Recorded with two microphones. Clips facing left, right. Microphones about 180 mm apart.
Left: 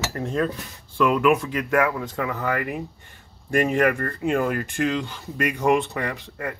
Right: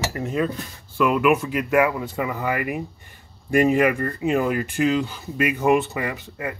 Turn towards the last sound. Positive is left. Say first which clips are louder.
# right 1 dB
turn(degrees=-5)  # may be behind; listen again after turning